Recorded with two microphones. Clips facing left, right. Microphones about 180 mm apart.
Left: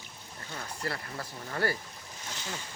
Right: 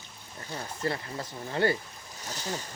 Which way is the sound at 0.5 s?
25° right (ahead or behind).